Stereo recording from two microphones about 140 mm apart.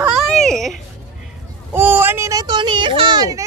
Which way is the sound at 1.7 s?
15° right (ahead or behind).